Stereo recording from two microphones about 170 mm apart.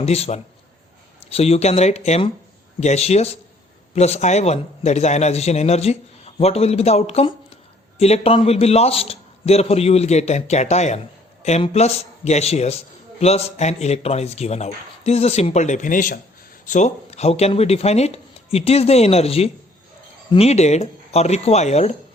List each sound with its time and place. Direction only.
0.0 s a man's voice: 40° left (ahead or behind)